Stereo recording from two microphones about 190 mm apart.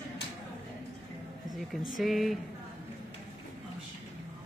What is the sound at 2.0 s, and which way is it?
Speech, centre (ahead or behind).